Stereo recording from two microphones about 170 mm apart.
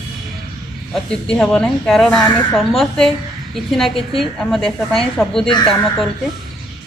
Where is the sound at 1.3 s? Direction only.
5° left (ahead or behind).